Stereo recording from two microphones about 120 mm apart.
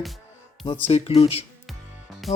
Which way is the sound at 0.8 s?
55° left (ahead or behind).